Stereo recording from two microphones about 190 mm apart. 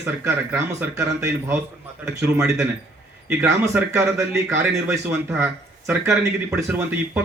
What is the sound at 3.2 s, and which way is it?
A man's voice, 10° right (ahead or behind).